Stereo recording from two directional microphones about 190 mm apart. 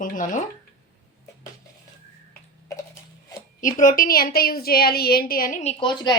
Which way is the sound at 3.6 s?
45° left (ahead or behind).